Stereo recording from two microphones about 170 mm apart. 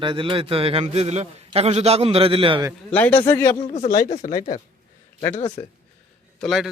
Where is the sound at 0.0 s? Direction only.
30° right (ahead or behind).